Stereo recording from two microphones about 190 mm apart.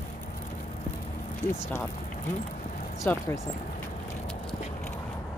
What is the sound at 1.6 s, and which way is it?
Speech, 15° left (ahead or behind).